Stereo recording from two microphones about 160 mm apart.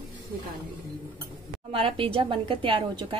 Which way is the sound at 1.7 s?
35° right (ahead or behind).